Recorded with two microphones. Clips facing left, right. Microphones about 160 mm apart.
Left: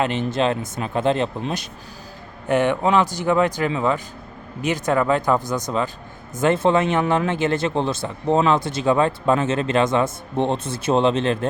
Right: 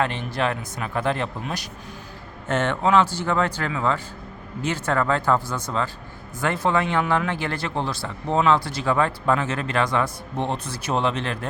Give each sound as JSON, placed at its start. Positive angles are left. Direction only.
{"t": 0.0, "sound": "speech", "side_deg": 20}